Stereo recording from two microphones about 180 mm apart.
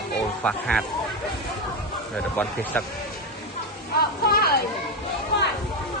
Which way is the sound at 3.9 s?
60° left (ahead or behind).